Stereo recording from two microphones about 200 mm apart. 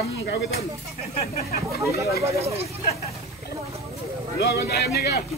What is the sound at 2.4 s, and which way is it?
Speech, 30° right (ahead or behind).